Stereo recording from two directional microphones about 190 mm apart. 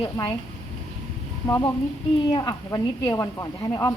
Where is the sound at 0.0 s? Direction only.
25° left (ahead or behind).